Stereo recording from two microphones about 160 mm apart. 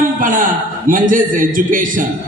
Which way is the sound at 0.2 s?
55° right (ahead or behind).